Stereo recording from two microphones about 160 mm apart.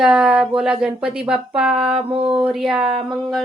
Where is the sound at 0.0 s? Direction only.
5° right (ahead or behind).